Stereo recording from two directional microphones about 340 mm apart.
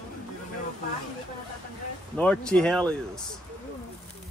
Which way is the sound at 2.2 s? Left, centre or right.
Centre.